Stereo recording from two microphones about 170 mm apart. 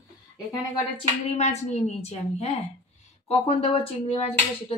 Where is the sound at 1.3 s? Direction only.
40° left (ahead or behind).